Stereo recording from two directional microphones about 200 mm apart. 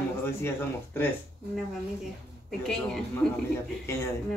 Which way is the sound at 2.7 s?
5° left (ahead or behind).